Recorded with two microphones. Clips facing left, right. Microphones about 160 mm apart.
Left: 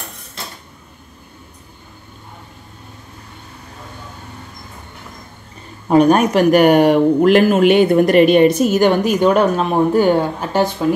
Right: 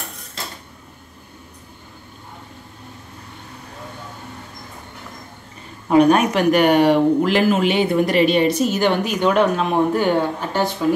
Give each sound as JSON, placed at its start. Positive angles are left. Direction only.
{"t": 5.9, "sound": "speech", "side_deg": 40}